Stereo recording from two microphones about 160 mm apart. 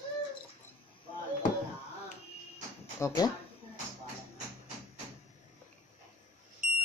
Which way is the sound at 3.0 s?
15° left (ahead or behind).